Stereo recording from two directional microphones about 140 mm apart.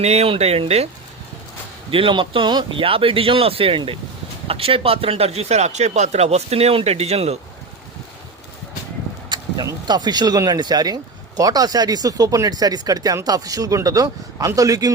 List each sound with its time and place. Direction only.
0.0 s speech: 50° right (ahead or behind)
1.9 s speech: 40° right (ahead or behind)
9.3 s speech: 30° right (ahead or behind)